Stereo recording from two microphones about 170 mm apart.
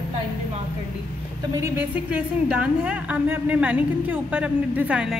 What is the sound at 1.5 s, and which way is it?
A woman's voice, 15° right (ahead or behind).